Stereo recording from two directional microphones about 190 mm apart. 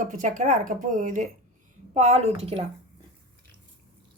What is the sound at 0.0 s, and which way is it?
A woman's voice, 45° right (ahead or behind).